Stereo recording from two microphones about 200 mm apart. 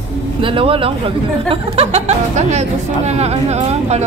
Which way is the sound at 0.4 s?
25° right (ahead or behind).